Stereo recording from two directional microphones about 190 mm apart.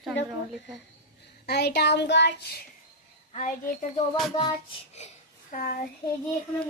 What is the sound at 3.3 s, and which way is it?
Speech, 40° left (ahead or behind).